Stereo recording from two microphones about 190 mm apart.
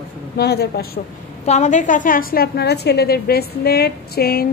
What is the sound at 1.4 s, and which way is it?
A woman's voice, 35° left (ahead or behind).